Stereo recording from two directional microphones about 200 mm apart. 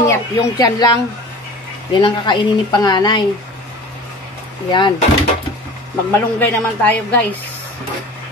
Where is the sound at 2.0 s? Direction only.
20° left (ahead or behind).